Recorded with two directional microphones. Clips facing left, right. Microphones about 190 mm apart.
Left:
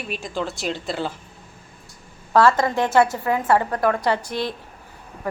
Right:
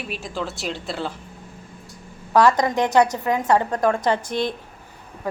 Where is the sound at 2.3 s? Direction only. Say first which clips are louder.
Even; 15° right (ahead or behind).